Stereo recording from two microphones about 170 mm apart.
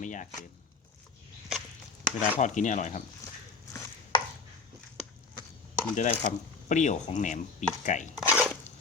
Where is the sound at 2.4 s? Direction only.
45° left (ahead or behind).